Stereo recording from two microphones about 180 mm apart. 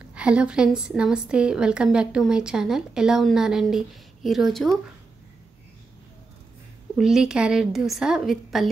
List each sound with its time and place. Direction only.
0.1 s a woman's voice: 5° right (ahead or behind)
7.0 s a woman's voice: 5° right (ahead or behind)